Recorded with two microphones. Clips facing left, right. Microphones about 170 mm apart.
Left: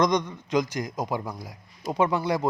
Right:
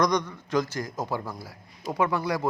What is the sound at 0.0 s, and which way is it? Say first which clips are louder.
A man's voice: left 1 dB; 20° left (ahead or behind).